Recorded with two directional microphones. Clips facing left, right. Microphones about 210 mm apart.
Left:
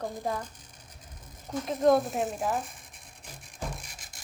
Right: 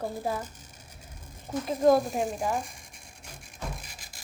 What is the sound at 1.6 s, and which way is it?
Speech, centre (ahead or behind).